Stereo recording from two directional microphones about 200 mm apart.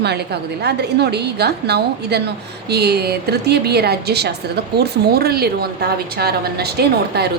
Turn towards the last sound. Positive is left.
turn(degrees=-55)  # may be behind; listen again after turning